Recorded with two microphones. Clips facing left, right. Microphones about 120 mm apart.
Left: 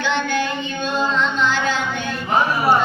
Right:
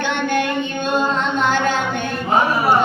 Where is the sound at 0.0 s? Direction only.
55° right (ahead or behind).